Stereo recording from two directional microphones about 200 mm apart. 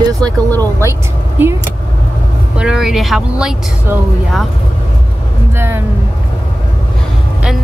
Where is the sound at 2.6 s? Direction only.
5° right (ahead or behind).